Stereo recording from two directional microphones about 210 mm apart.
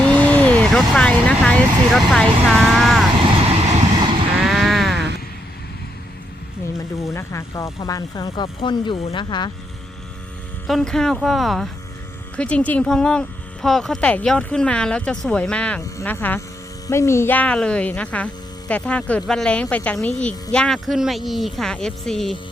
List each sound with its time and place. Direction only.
0.0 s speech: 5° left (ahead or behind)
4.4 s sheep: centre (ahead or behind)
6.7 s speech: 15° left (ahead or behind)
10.7 s speech: centre (ahead or behind)